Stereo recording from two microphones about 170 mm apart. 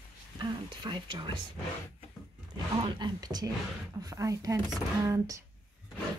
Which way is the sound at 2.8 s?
30° right (ahead or behind).